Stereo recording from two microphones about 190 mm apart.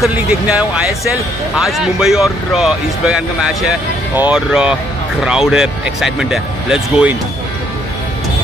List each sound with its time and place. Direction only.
0.0 s speech: 5° right (ahead or behind)